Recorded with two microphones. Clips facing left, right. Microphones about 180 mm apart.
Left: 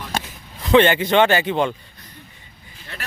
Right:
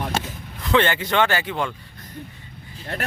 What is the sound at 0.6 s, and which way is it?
Speech, 20° left (ahead or behind).